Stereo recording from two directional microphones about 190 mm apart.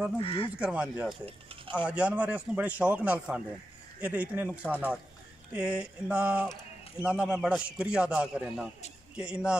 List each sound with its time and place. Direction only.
0.2 s speech: 30° left (ahead or behind)
0.6 s a man's voice: 5° right (ahead or behind)
1.2 s speech: 30° right (ahead or behind)
1.9 s a man's voice: 5° right (ahead or behind)